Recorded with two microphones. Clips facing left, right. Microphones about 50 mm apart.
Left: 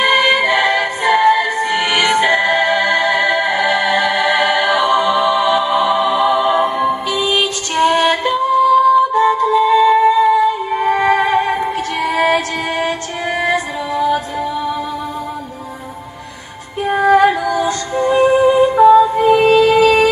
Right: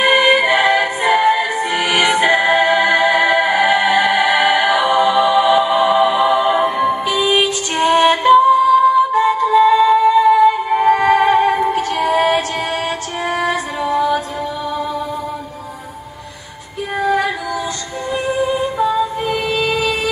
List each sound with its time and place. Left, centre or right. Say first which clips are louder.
0.0 s music: even; centre
10.3 s music: right 2 dB; centre
11.5 s music: right 2 dB; centre
13.9 s music: left 1 dB; centre
16.9 s music: left 6 dB; left
19.4 s music: left 7 dB; left